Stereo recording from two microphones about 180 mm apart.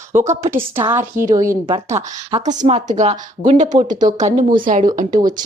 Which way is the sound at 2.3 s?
40° right (ahead or behind).